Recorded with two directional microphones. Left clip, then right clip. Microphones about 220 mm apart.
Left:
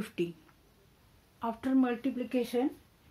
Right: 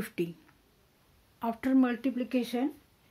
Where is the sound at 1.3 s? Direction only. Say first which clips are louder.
Right 2 dB; 40° right (ahead or behind).